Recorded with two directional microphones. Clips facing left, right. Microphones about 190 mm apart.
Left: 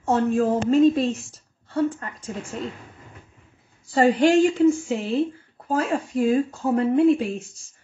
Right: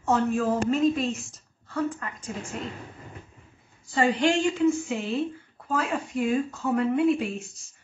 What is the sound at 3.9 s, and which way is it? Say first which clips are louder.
Speech: left 6 dB; 40° left (ahead or behind).